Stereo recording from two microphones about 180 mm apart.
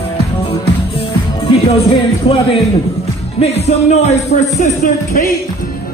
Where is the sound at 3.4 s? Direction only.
35° left (ahead or behind).